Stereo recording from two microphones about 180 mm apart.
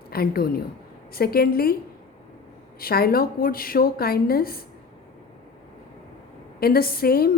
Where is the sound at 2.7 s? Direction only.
55° left (ahead or behind).